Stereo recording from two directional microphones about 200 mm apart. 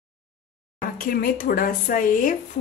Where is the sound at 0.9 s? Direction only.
45° left (ahead or behind).